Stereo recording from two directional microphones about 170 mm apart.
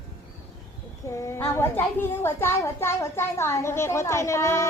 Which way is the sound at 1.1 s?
15° left (ahead or behind).